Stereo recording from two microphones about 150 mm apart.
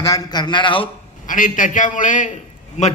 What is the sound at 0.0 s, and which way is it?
Speech, 25° left (ahead or behind).